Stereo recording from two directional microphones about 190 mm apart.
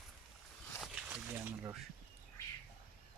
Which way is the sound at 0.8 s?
5° right (ahead or behind).